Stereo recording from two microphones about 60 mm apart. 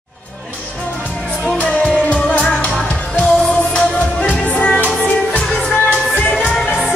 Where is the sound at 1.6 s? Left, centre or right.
Centre.